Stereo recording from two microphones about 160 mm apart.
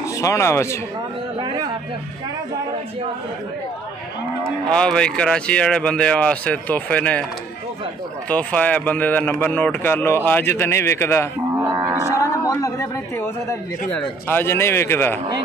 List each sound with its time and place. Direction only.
0.0 s speech: 20° left (ahead or behind)
4.6 s speech: 5° left (ahead or behind)
8.3 s speech: 10° left (ahead or behind)
11.7 s livestock: 20° right (ahead or behind)
12.2 s a sound: 20° left (ahead or behind)
14.2 s speech: 15° left (ahead or behind)